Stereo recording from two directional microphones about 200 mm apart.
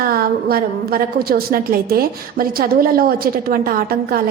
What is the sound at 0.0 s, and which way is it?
A woman's voice, 50° right (ahead or behind).